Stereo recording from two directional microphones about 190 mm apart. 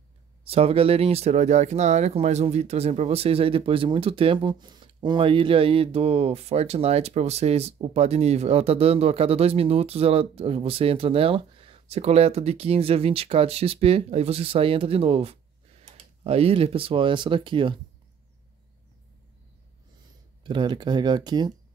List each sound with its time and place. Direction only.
0.5 s speech: 30° right (ahead or behind)
20.4 s speech: 25° right (ahead or behind)